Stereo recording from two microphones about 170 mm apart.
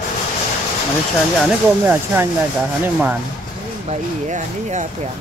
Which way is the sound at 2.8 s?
10° right (ahead or behind).